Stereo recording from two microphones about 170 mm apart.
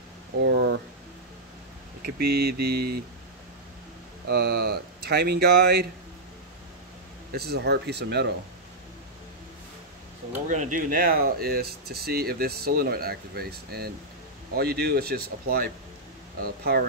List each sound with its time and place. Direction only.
0.4 s speech: 90° right
2.0 s speech: 70° right (ahead or behind)
4.3 s speech: 70° right (ahead or behind)
7.3 s speech: 70° right (ahead or behind)
10.5 s speech: 50° right (ahead or behind)